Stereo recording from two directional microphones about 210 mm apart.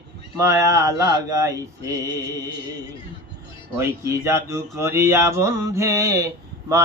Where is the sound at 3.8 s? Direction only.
10° right (ahead or behind).